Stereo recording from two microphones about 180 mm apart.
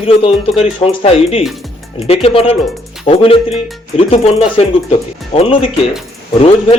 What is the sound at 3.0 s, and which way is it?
Speech, 30° left (ahead or behind).